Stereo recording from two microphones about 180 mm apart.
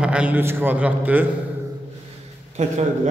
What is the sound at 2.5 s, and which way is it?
Speech, 40° right (ahead or behind).